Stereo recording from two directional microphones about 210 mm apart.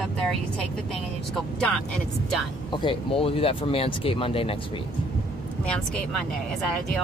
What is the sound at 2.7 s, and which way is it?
Speech, 25° left (ahead or behind).